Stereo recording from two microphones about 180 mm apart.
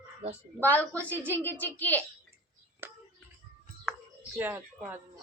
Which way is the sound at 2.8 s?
10° right (ahead or behind).